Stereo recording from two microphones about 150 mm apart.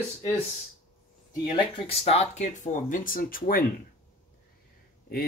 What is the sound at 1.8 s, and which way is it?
Speech, 40° left (ahead or behind).